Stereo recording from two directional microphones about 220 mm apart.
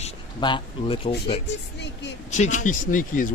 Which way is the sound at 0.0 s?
20° left (ahead or behind).